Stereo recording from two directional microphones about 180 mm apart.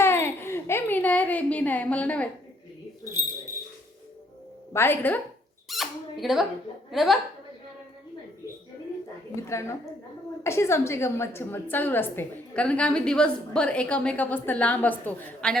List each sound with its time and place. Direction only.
0.0 s a sound: 15° left (ahead or behind)
3.2 s a sound: 15° right (ahead or behind)
4.7 s a woman's voice: 10° left (ahead or behind)
5.6 s squeak: centre (ahead or behind)
6.9 s a woman's voice: centre (ahead or behind)
9.3 s a woman's voice: 15° left (ahead or behind)